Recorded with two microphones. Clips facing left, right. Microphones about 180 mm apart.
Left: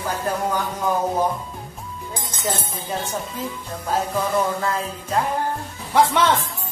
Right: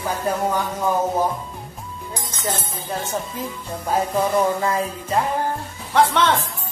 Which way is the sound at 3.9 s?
15° right (ahead or behind).